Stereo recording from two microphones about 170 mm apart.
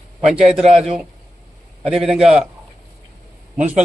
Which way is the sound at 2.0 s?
Centre (ahead or behind).